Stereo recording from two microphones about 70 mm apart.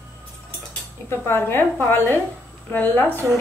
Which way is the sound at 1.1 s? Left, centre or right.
Left.